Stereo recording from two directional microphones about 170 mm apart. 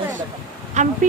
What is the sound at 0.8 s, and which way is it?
Speech, 45° right (ahead or behind).